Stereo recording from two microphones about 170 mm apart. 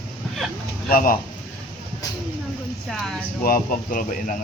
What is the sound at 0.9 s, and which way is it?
Speech, 60° left (ahead or behind).